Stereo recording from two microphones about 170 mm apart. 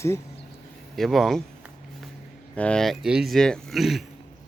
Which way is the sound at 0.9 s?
Centre (ahead or behind).